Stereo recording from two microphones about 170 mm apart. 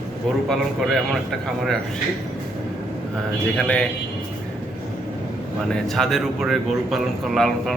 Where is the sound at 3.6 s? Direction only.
5° left (ahead or behind).